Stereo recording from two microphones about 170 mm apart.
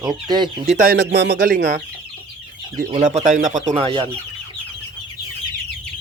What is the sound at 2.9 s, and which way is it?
Speech, 45° right (ahead or behind).